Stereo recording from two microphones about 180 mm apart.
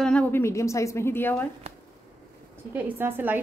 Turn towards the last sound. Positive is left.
turn(degrees=-10)  # may be behind; listen again after turning